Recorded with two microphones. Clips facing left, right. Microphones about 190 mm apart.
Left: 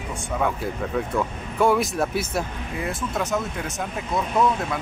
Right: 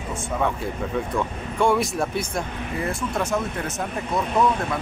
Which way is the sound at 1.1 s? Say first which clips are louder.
Left 1 dB; centre (ahead or behind).